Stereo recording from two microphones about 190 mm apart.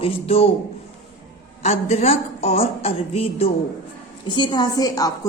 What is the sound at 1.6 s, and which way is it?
A woman's voice, 35° left (ahead or behind).